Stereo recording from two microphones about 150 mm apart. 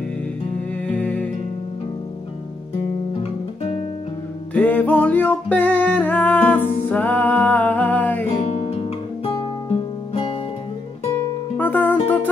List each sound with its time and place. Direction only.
0.8 s music: 10° left (ahead or behind)
4.6 s music: 10° left (ahead or behind)
8.7 s guitar: 35° left (ahead or behind)
11.5 s music: 10° left (ahead or behind)